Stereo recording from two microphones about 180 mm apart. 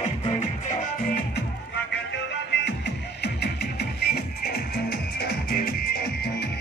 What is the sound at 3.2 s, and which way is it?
Music, 65° left (ahead or behind).